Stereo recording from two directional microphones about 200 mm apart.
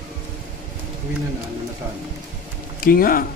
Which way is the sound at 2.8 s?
45° left (ahead or behind).